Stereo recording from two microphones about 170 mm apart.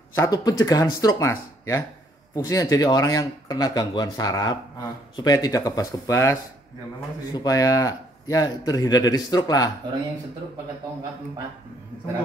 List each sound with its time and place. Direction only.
0.1 s speech: 20° left (ahead or behind)
7.3 s speech: 20° left (ahead or behind)